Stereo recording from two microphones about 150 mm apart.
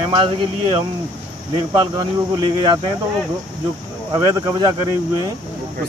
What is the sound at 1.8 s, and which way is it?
Speech, 30° right (ahead or behind).